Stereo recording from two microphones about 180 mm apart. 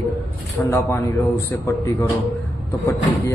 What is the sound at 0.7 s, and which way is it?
Speech, 15° left (ahead or behind).